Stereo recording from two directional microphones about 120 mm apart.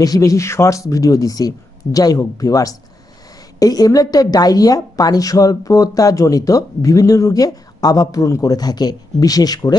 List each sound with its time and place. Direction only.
0.0 s a woman's voice: 30° left (ahead or behind)